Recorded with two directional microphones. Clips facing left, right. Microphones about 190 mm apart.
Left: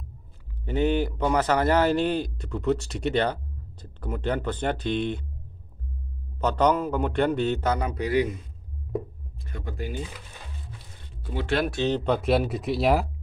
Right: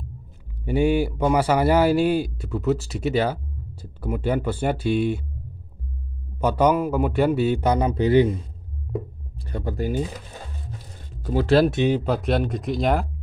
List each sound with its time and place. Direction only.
0.7 s speech: 10° right (ahead or behind)
6.3 s speech: 10° right (ahead or behind)
7.9 s a man's voice: 30° right (ahead or behind)
9.4 s speech: 35° right (ahead or behind)
11.2 s speech: 40° right (ahead or behind)
11.7 s speech: 10° right (ahead or behind); by 13.0 s 5° left (ahead or behind)